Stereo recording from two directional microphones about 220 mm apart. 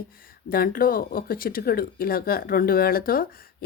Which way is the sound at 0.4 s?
40° left (ahead or behind).